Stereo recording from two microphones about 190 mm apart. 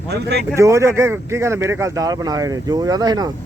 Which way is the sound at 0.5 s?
15° right (ahead or behind).